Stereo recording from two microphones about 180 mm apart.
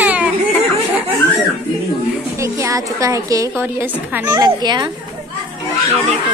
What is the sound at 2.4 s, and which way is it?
A woman's voice, 15° right (ahead or behind).